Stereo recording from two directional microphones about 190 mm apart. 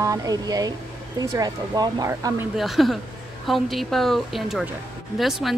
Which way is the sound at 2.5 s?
Centre (ahead or behind).